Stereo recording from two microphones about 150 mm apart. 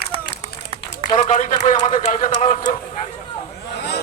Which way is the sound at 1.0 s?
55° left (ahead or behind).